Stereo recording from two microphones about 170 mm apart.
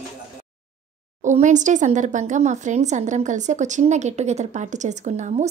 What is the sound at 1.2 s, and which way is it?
Speech, 45° right (ahead or behind).